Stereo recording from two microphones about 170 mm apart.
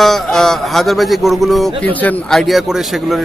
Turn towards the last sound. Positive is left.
turn(degrees=0)  # may be behind; listen again after turning